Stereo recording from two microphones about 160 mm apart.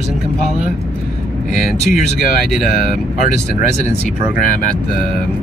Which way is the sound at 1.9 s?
60° left (ahead or behind).